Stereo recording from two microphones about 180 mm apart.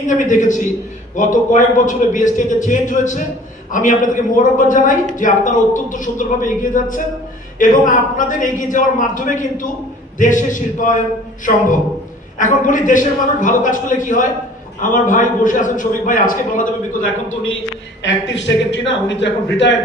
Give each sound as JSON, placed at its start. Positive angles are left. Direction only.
{"t": 0.1, "sound": "a man's voice", "side_deg": 45}
{"t": 12.4, "sound": "a man's voice", "side_deg": 45}
{"t": 18.0, "sound": "a man's voice", "side_deg": 85}